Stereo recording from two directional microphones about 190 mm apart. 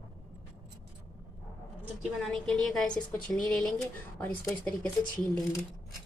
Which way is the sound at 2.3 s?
5° left (ahead or behind).